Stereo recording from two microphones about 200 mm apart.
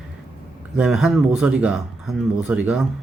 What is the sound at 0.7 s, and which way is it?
Speech, 5° right (ahead or behind).